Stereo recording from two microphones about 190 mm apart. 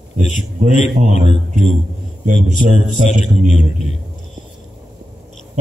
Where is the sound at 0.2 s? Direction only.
40° left (ahead or behind).